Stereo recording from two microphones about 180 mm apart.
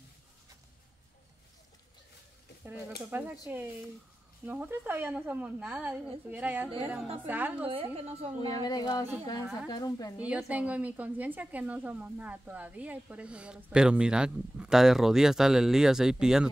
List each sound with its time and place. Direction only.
3.1 s a woman's voice: 10° right (ahead or behind)
7.6 s a woman's voice: 30° right (ahead or behind)
8.4 s a woman's voice: 20° left (ahead or behind)
10.3 s a woman's voice: 10° right (ahead or behind)